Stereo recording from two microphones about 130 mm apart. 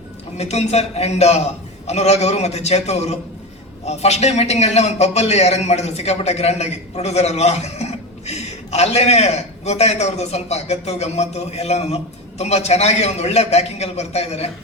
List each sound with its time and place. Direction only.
0.3 s a man's voice: 55° left (ahead or behind)